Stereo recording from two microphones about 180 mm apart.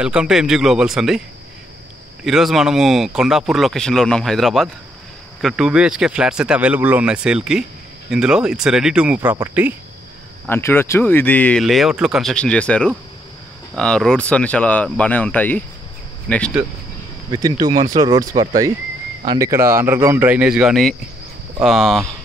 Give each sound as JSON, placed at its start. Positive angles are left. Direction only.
{"t": 0.0, "sound": "speech", "side_deg": -5}
{"t": 2.2, "sound": "speech", "side_deg": 0}
{"t": 10.5, "sound": "speech", "side_deg": 10}
{"t": 17.3, "sound": "speech", "side_deg": -20}